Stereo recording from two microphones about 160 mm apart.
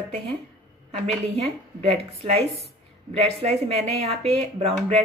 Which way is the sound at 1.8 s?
40° right (ahead or behind).